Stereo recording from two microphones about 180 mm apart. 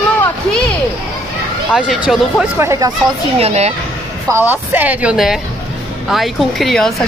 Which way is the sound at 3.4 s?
35° right (ahead or behind).